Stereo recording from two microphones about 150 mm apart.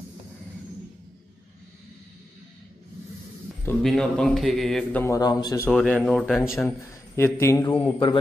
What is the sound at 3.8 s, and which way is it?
A man's voice, 5° left (ahead or behind).